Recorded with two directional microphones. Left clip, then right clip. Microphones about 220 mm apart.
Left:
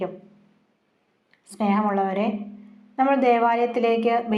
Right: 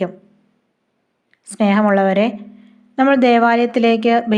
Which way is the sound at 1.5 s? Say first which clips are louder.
Right 8 dB; 50° right (ahead or behind).